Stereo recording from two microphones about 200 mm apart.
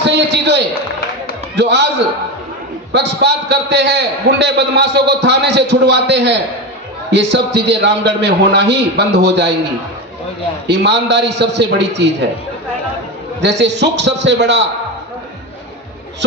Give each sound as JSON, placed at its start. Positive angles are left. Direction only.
{"t": 0.0, "sound": "a sound", "side_deg": -60}
{"t": 1.5, "sound": "a man's voice", "side_deg": -55}
{"t": 2.9, "sound": "a man's voice", "side_deg": -60}
{"t": 10.7, "sound": "a man's voice", "side_deg": -60}
{"t": 13.4, "sound": "a man's voice", "side_deg": -60}